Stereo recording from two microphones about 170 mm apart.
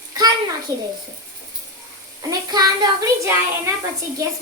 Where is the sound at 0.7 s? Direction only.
20° right (ahead or behind).